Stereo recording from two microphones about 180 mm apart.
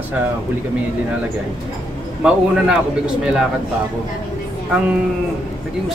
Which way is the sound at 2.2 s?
5° right (ahead or behind).